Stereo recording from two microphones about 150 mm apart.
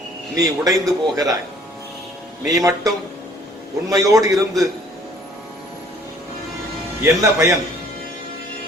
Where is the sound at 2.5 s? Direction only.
25° right (ahead or behind).